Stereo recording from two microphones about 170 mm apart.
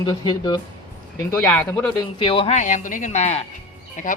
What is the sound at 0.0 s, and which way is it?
Speech, 25° left (ahead or behind).